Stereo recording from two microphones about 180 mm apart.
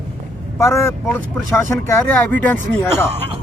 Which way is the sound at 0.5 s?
15° left (ahead or behind).